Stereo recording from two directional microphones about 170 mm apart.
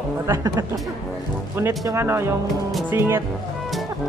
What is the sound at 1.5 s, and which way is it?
Speech, 15° right (ahead or behind).